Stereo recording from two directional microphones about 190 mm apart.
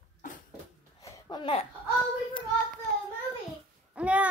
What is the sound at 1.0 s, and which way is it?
Babbling, 20° left (ahead or behind).